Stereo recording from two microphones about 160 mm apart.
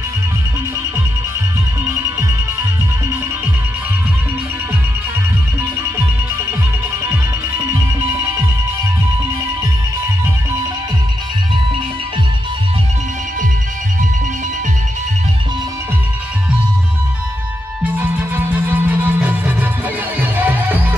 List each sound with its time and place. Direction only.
17.9 s music: 10° right (ahead or behind)